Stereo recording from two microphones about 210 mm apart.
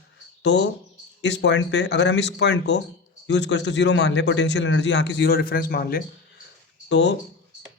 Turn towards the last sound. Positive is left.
turn(degrees=60)  # may be behind; listen again after turning